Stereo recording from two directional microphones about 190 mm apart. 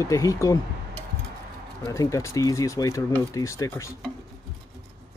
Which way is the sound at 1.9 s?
15° left (ahead or behind).